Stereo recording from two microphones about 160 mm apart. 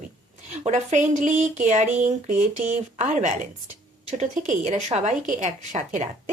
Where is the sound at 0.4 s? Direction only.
45° right (ahead or behind).